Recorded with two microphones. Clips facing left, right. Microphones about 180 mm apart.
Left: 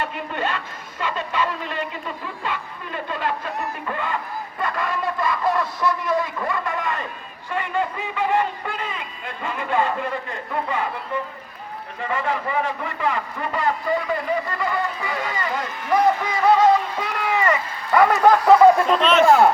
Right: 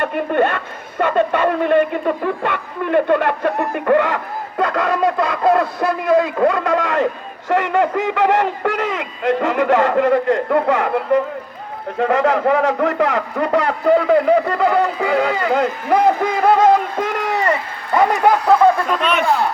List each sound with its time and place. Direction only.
0.0 s a woman's voice: 55° right (ahead or behind); by 17.6 s 35° right (ahead or behind)
17.9 s speech: 20° right (ahead or behind)
18.9 s speech: 5° right (ahead or behind)